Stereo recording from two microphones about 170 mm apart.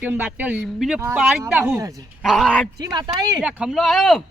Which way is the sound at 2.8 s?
25° right (ahead or behind).